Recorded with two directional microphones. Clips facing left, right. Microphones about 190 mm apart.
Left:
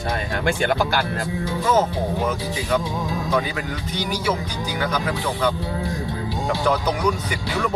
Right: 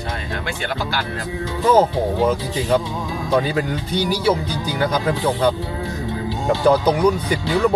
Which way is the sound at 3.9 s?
30° right (ahead or behind).